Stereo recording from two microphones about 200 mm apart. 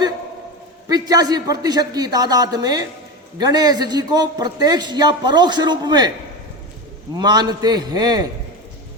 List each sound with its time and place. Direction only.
0.9 s a man's voice: 20° right (ahead or behind)
7.2 s a man's voice: 20° right (ahead or behind)